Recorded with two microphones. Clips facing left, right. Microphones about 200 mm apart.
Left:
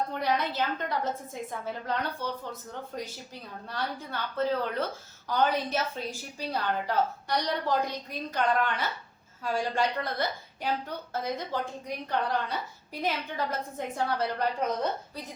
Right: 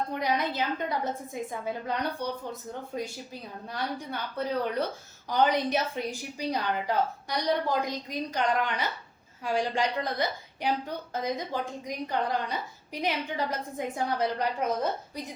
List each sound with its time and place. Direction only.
0.1 s a woman's voice: 10° right (ahead or behind)
5.3 s a woman's voice: 15° right (ahead or behind)